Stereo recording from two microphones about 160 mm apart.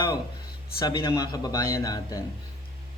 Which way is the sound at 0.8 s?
30° left (ahead or behind).